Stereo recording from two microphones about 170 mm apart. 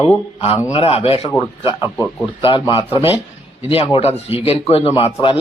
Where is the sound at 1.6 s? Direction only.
25° left (ahead or behind).